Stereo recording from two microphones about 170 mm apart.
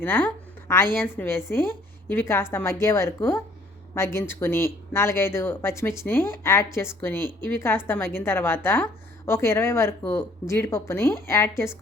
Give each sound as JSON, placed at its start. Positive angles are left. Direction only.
{"t": 0.0, "sound": "a woman's voice", "side_deg": 10}